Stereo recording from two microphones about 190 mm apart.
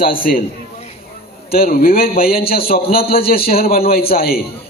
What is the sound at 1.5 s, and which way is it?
A man's voice, 50° left (ahead or behind).